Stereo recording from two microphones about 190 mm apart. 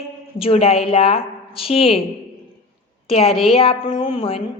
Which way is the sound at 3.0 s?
30° left (ahead or behind).